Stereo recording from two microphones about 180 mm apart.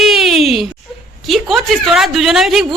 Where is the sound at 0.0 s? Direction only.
Centre (ahead or behind).